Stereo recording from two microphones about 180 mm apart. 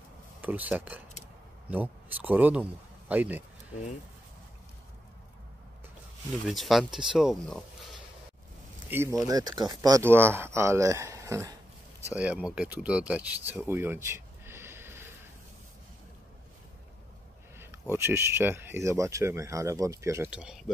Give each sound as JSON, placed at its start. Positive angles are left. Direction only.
{"t": 0.4, "sound": "speech", "side_deg": -10}
{"t": 6.4, "sound": "speech", "side_deg": 0}
{"t": 8.9, "sound": "speech", "side_deg": -15}
{"t": 13.5, "sound": "a sound", "side_deg": -10}
{"t": 17.6, "sound": "speech", "side_deg": -15}